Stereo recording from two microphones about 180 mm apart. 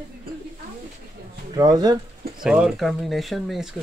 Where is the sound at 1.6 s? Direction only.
20° right (ahead or behind).